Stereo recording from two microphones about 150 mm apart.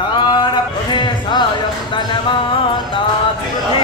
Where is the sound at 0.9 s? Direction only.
30° left (ahead or behind).